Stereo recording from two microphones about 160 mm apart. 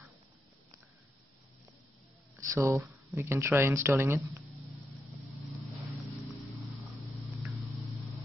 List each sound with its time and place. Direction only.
2.4 s speech: 20° right (ahead or behind)
2.8 s a sound: centre (ahead or behind)
3.2 s speech: 15° right (ahead or behind)
5.4 s vehicle: centre (ahead or behind)